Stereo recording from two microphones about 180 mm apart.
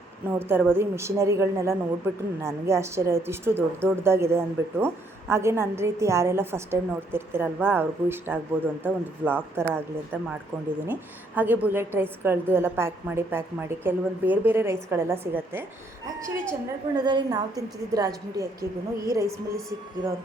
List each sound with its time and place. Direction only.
0.3 s a woman's voice: 10° right (ahead or behind)
11.3 s a woman's voice: 10° right (ahead or behind)